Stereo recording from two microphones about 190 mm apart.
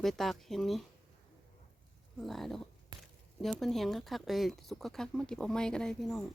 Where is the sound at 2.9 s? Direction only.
20° right (ahead or behind).